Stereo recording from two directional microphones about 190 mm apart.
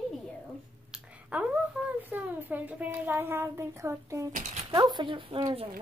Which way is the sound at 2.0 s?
10° right (ahead or behind).